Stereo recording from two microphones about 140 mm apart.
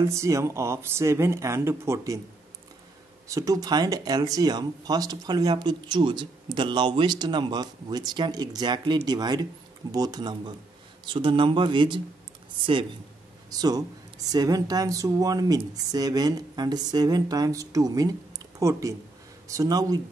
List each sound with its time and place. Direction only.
0.1 s speech: 20° right (ahead or behind)
3.3 s speech: 25° right (ahead or behind)
13.5 s speech: 25° right (ahead or behind)